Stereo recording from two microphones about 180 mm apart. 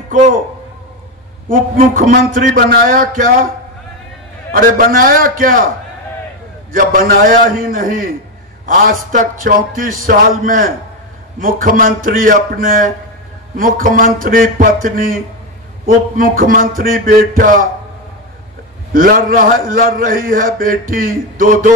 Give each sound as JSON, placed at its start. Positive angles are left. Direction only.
{"t": 1.5, "sound": "a man's voice", "side_deg": -50}
{"t": 4.5, "sound": "a man's voice", "side_deg": -50}
{"t": 6.7, "sound": "a man's voice", "side_deg": -50}
{"t": 16.2, "sound": "a man's voice", "side_deg": -50}
{"t": 18.9, "sound": "a man's voice", "side_deg": -50}